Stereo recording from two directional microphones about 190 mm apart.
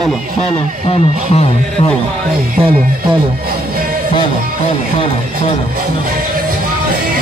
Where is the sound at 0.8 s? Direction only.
30° left (ahead or behind).